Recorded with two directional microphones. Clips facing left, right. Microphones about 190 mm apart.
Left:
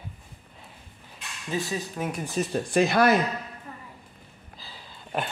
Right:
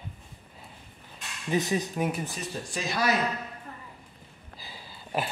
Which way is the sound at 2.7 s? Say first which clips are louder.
Left 8 dB; 60° left (ahead or behind).